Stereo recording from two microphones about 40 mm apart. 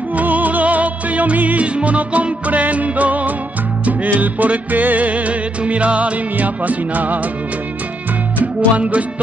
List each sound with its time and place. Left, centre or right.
0.1 s music: right
8.7 s music: right